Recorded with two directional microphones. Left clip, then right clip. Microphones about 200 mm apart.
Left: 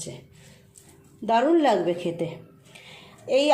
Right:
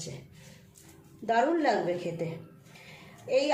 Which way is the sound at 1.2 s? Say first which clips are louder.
Left 6 dB; 35° left (ahead or behind).